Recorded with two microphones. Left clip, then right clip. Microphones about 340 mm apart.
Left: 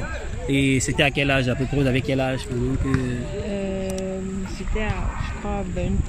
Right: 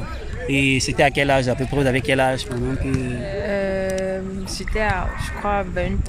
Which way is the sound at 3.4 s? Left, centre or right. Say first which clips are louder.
Right 8 dB; right.